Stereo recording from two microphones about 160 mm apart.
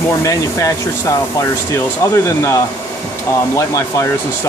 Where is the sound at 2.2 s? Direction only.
20° left (ahead or behind).